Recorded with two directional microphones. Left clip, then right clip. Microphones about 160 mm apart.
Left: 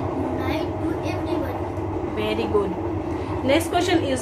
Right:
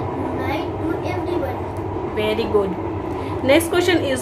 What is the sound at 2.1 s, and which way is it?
Speech, 20° right (ahead or behind).